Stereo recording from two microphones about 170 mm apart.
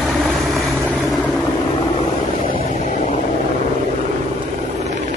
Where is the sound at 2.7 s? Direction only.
40° left (ahead or behind).